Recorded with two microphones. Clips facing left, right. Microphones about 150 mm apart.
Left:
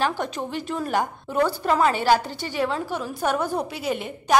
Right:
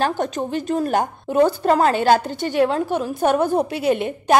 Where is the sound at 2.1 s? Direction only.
55° right (ahead or behind).